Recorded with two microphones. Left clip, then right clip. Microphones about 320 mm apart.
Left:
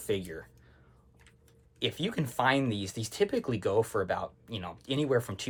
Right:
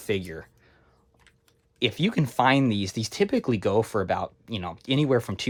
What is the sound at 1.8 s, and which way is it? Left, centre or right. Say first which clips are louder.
Speech: right 7 dB; centre.